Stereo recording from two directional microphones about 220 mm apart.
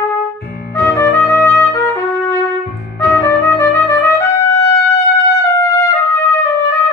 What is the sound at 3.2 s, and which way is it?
Music, 10° left (ahead or behind).